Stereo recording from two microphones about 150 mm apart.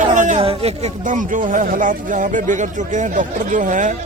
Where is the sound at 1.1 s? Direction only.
60° right (ahead or behind).